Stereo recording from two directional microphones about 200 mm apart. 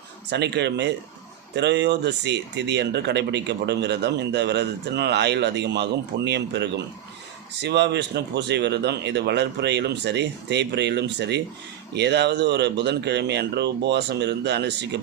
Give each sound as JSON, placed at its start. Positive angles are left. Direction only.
{"t": 0.3, "sound": "speech", "side_deg": -55}